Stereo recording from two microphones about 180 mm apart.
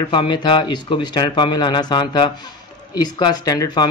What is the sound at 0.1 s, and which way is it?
Speech, 25° left (ahead or behind).